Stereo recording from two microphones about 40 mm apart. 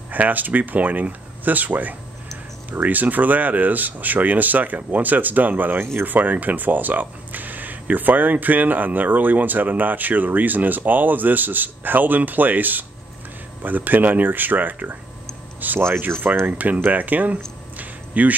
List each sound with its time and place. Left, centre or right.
0.1 s speech: right
16.1 s speech: right
16.4 s speech: right
17.7 s a sound: right